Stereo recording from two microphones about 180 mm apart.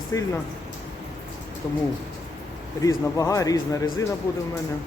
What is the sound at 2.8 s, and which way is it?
A man's voice, 20° left (ahead or behind).